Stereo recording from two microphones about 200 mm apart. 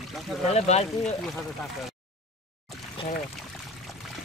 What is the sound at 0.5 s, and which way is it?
Speech, 35° left (ahead or behind).